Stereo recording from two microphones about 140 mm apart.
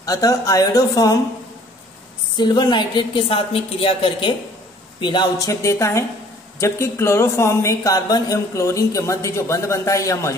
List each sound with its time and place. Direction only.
0.0 s speech: 25° left (ahead or behind)
2.3 s speech: 30° left (ahead or behind)